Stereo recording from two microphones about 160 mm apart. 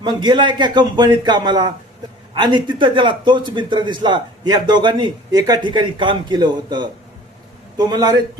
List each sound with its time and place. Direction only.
0.0 s a man's voice: 25° right (ahead or behind)